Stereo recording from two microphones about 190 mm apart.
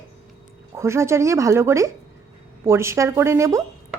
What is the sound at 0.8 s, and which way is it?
A woman's voice, 15° right (ahead or behind).